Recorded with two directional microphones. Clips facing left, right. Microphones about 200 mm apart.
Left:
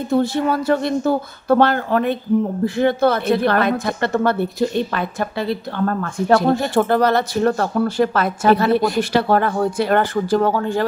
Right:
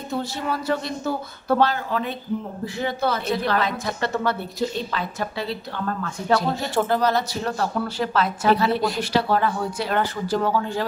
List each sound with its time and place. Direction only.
0.1 s a woman's voice: 55° left (ahead or behind)